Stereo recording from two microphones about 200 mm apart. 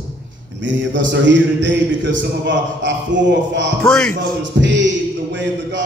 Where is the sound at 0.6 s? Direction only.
65° right (ahead or behind).